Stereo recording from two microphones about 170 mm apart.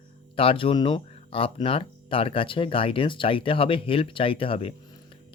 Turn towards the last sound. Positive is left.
turn(degrees=35)  # may be behind; listen again after turning